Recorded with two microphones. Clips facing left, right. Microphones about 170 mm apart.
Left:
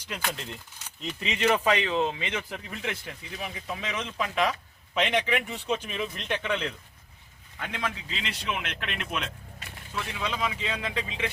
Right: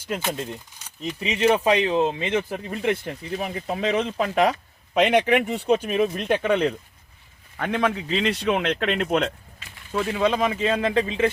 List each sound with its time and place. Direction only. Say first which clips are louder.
0.2 s speech: right 6 dB; 25° right (ahead or behind)
1.2 s speech: right 5 dB; 35° right (ahead or behind)